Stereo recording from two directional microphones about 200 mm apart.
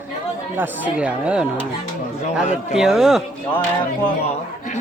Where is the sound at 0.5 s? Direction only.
10° right (ahead or behind).